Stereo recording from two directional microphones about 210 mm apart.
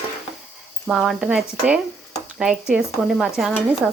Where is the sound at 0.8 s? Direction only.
Centre (ahead or behind).